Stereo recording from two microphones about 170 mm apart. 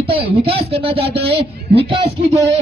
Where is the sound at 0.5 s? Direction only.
35° right (ahead or behind).